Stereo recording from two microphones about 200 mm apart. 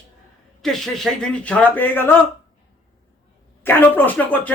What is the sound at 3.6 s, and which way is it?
Speech, 10° left (ahead or behind).